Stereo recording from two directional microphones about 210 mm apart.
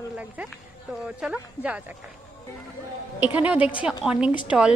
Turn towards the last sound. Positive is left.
turn(degrees=-5)  # may be behind; listen again after turning